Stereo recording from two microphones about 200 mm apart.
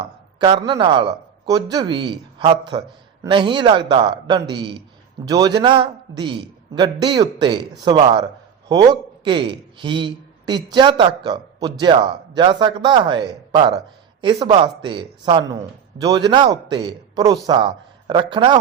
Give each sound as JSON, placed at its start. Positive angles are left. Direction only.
{"t": 0.0, "sound": "speech", "side_deg": -25}